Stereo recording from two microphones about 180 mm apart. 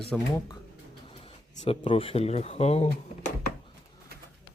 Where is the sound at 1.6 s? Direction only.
30° left (ahead or behind).